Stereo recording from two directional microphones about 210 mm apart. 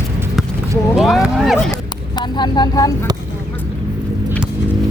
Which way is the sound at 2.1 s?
20° left (ahead or behind).